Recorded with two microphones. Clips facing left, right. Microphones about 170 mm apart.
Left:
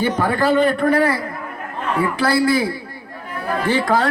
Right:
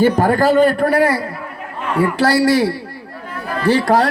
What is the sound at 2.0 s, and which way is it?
Speech, 90° right.